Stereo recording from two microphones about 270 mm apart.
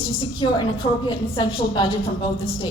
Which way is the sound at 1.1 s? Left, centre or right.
Centre.